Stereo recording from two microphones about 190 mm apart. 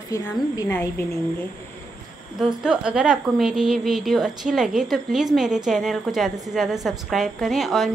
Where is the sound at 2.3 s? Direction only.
5° right (ahead or behind).